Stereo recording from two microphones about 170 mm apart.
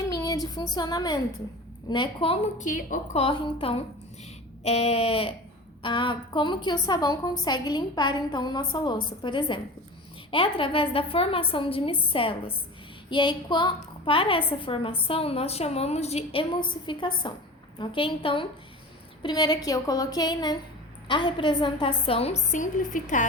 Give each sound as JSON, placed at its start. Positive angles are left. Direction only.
{"t": 0.1, "sound": "a woman's voice", "side_deg": 20}
{"t": 2.6, "sound": "a woman's voice", "side_deg": 50}